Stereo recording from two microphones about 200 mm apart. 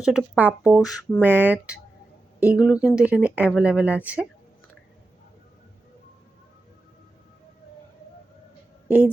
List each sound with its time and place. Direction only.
0.0 s speech: 5° right (ahead or behind)
0.8 s a sound: 20° left (ahead or behind)
1.2 s speech: 5° right (ahead or behind)